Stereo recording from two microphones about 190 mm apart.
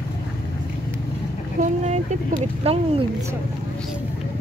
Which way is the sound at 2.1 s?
40° right (ahead or behind).